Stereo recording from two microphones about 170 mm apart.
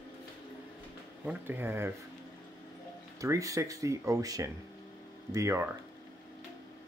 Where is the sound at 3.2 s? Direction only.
20° right (ahead or behind).